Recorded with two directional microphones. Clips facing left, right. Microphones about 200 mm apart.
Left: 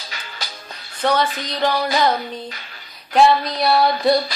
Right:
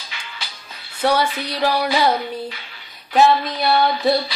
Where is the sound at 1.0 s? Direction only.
10° right (ahead or behind).